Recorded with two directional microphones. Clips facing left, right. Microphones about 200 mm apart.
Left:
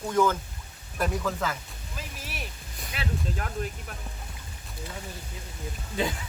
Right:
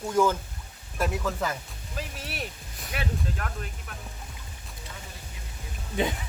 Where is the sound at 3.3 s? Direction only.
30° left (ahead or behind).